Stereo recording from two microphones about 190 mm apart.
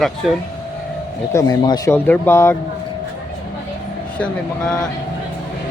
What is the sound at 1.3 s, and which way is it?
Speech, 20° left (ahead or behind).